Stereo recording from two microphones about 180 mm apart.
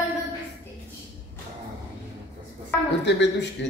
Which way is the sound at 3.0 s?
75° left (ahead or behind).